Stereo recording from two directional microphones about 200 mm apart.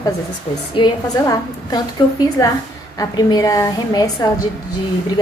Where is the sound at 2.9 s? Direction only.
20° left (ahead or behind).